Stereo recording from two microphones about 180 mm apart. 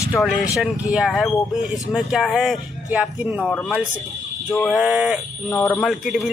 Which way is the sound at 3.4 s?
10° left (ahead or behind).